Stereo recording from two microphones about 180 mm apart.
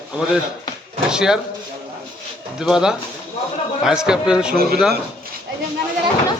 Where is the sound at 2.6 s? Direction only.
5° right (ahead or behind).